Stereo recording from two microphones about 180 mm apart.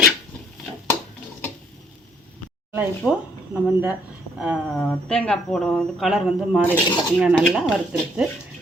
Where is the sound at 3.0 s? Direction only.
5° left (ahead or behind).